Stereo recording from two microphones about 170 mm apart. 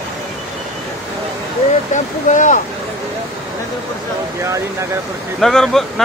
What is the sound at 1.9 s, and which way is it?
Speech, 45° left (ahead or behind).